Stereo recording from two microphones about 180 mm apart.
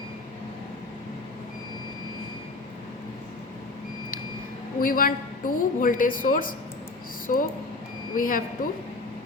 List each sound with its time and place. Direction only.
4.8 s a woman's voice: 50° left (ahead or behind)